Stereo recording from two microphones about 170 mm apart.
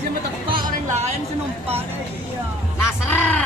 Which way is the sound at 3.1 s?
10° left (ahead or behind).